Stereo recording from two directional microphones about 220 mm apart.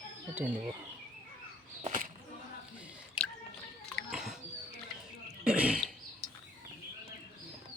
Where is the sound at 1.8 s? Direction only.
35° right (ahead or behind).